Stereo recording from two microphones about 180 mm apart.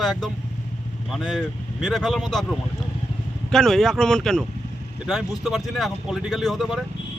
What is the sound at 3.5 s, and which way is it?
Speech, centre (ahead or behind).